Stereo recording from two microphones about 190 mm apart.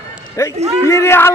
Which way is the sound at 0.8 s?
15° left (ahead or behind).